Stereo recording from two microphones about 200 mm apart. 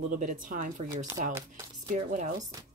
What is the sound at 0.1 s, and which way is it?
A woman's voice, 40° right (ahead or behind).